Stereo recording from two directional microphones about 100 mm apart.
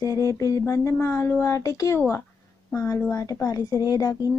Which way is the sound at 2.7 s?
30° left (ahead or behind).